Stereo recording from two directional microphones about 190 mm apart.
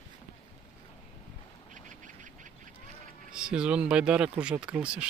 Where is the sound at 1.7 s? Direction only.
40° right (ahead or behind).